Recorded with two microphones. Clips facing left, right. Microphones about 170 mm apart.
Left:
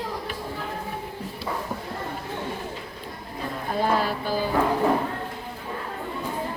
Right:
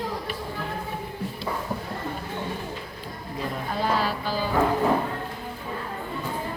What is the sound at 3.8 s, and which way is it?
Music, 50° left (ahead or behind).